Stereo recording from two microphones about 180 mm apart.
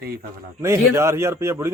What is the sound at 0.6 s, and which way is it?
Speech, 15° right (ahead or behind).